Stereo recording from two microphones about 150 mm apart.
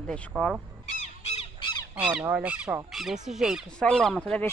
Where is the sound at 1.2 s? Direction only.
40° left (ahead or behind).